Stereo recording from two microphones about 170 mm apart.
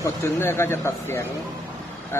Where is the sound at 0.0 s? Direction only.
15° left (ahead or behind).